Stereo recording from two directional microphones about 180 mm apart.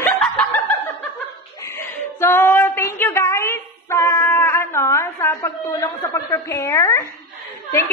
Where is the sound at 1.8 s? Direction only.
15° left (ahead or behind).